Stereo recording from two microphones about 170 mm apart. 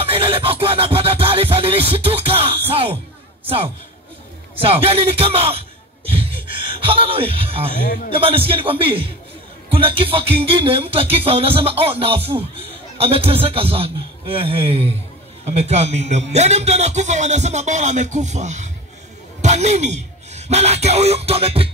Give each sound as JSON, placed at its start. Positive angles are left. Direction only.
{"t": 0.0, "sound": "music", "side_deg": -30}
{"t": 4.7, "sound": "music", "side_deg": -35}
{"t": 6.1, "sound": "a sound", "side_deg": -30}
{"t": 8.2, "sound": "music", "side_deg": -30}
{"t": 15.4, "sound": "a man's voice", "side_deg": -40}
{"t": 19.4, "sound": "music", "side_deg": -40}